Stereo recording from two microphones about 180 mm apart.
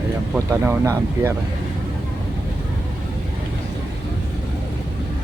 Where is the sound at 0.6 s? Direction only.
15° right (ahead or behind).